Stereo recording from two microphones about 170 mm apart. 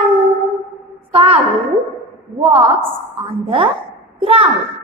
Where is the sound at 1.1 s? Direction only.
35° right (ahead or behind).